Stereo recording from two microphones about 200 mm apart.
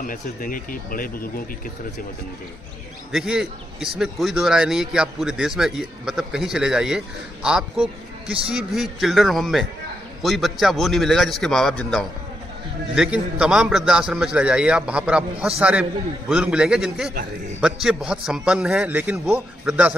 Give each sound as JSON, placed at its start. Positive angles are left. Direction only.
{"t": 0.0, "sound": "speech", "side_deg": 45}
{"t": 3.1, "sound": "a man's voice", "side_deg": 0}